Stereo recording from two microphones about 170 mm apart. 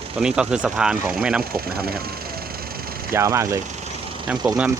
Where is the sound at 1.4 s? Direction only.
60° right (ahead or behind).